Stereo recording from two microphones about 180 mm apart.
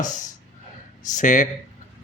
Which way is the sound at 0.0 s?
45° left (ahead or behind).